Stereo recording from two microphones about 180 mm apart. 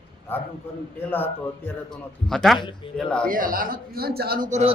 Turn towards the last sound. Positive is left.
turn(degrees=-40)  # may be behind; listen again after turning